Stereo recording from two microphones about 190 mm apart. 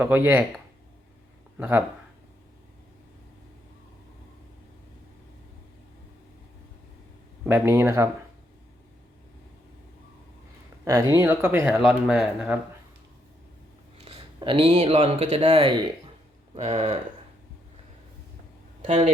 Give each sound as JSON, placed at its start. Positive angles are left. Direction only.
{"t": 0.0, "sound": "speech", "side_deg": -10}
{"t": 1.5, "sound": "speech", "side_deg": -10}
{"t": 7.4, "sound": "speech", "side_deg": -10}
{"t": 11.1, "sound": "speech", "side_deg": -15}
{"t": 11.8, "sound": "speech", "side_deg": -5}
{"t": 14.0, "sound": "speech", "side_deg": -30}
{"t": 18.9, "sound": "speech", "side_deg": -35}